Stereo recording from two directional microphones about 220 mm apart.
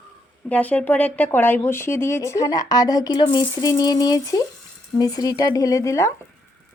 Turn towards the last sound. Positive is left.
turn(degrees=15)  # may be behind; listen again after turning